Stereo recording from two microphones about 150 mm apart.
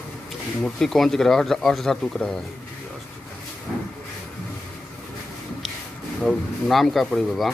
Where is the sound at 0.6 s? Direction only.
Centre (ahead or behind).